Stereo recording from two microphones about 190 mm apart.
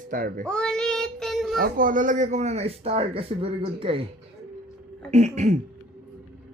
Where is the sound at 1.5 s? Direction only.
45° right (ahead or behind); by 4.0 s 30° right (ahead or behind).